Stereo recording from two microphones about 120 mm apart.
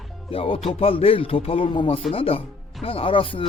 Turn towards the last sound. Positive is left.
turn(degrees=50)  # may be behind; listen again after turning